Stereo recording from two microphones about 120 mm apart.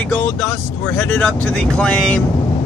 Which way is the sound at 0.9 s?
15° left (ahead or behind).